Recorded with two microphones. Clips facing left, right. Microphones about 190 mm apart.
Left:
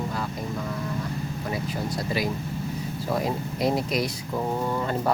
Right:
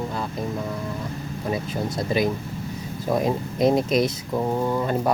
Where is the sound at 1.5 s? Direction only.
25° right (ahead or behind).